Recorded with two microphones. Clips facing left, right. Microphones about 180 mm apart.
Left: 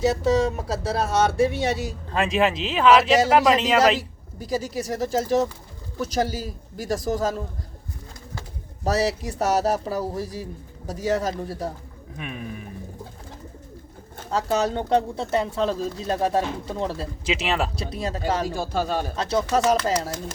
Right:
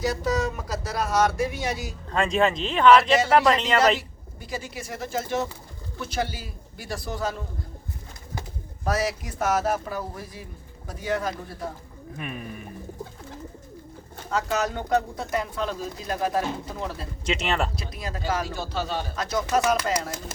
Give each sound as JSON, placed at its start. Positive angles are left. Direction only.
{"t": 0.0, "sound": "speech", "side_deg": 25}
{"t": 2.0, "sound": "speech", "side_deg": 0}
{"t": 3.9, "sound": "speech", "side_deg": 35}
{"t": 8.8, "sound": "speech", "side_deg": 35}
{"t": 12.1, "sound": "speech", "side_deg": 0}
{"t": 14.3, "sound": "speech", "side_deg": 35}
{"t": 17.2, "sound": "speech", "side_deg": 5}
{"t": 17.7, "sound": "speech", "side_deg": 35}
{"t": 19.1, "sound": "speech", "side_deg": 30}